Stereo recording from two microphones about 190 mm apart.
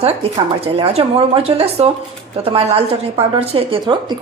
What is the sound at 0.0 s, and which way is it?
A woman's voice, 30° right (ahead or behind).